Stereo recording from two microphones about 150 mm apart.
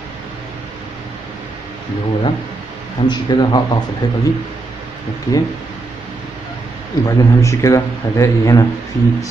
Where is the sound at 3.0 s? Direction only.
30° left (ahead or behind).